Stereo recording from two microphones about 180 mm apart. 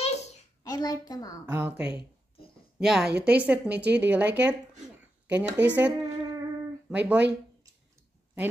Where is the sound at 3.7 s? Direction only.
70° right (ahead or behind).